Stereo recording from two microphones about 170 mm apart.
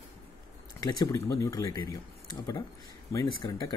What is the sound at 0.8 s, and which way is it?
Speech, 20° left (ahead or behind).